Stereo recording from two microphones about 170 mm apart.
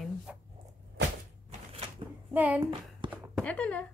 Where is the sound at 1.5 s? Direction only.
40° right (ahead or behind).